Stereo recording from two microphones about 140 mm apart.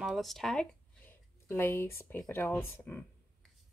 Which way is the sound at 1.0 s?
15° left (ahead or behind).